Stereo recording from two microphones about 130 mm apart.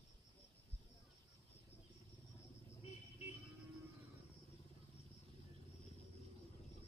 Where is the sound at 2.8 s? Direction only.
50° left (ahead or behind).